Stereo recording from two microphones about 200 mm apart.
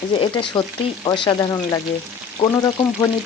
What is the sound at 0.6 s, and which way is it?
A woman's voice, 20° left (ahead or behind).